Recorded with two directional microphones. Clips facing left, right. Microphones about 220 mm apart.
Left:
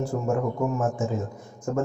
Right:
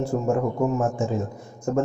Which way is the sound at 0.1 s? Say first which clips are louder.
Right 3 dB; 30° right (ahead or behind).